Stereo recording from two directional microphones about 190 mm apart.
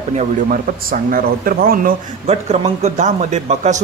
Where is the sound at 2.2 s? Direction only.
35° right (ahead or behind).